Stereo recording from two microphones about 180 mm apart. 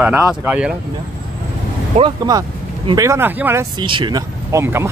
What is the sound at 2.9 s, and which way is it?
Speech, 15° right (ahead or behind).